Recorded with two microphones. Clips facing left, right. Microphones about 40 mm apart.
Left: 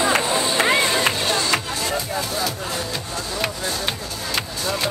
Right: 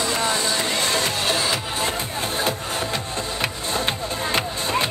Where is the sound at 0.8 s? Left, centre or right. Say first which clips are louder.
Left 3 dB; centre.